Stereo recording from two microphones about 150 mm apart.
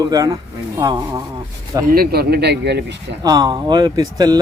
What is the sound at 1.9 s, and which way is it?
Speech, 90° right.